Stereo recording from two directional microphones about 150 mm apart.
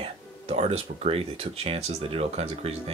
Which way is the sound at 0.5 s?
45° right (ahead or behind).